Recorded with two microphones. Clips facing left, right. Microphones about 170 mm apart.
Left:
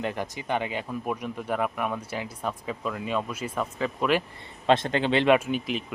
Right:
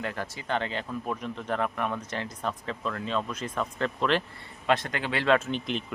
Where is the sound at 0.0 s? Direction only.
20° left (ahead or behind).